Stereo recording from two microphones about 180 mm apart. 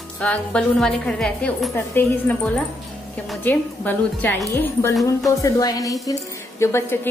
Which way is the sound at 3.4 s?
10° left (ahead or behind).